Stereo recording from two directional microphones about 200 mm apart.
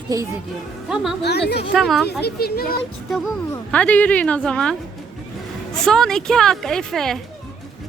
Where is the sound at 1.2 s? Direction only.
55° left (ahead or behind).